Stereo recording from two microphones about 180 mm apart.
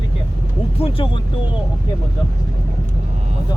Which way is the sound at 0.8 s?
30° left (ahead or behind).